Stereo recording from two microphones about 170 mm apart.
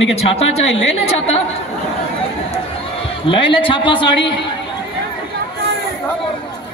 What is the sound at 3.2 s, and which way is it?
A man's voice, 30° left (ahead or behind).